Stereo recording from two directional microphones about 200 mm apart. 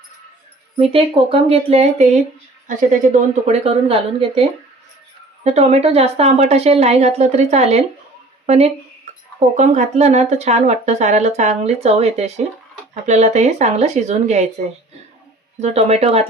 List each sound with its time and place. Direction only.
0.8 s speech: 30° right (ahead or behind)
15.6 s speech: 30° right (ahead or behind)